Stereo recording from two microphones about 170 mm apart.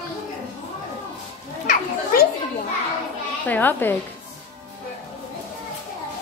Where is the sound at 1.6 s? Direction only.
60° left (ahead or behind).